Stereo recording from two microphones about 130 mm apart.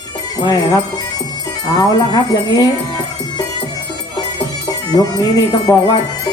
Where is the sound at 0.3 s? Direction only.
30° left (ahead or behind).